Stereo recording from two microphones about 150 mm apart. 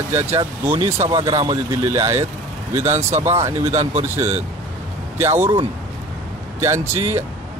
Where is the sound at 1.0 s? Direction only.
35° right (ahead or behind).